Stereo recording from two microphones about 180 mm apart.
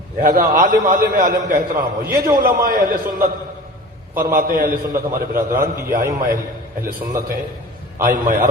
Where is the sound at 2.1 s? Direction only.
20° right (ahead or behind).